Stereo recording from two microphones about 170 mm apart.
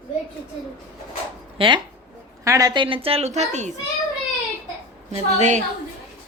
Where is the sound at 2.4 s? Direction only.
20° right (ahead or behind); by 3.7 s 40° right (ahead or behind).